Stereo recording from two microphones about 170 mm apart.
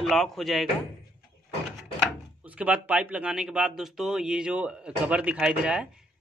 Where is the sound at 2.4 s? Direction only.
10° right (ahead or behind).